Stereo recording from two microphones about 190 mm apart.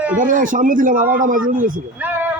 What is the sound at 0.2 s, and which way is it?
A man's voice, 45° right (ahead or behind).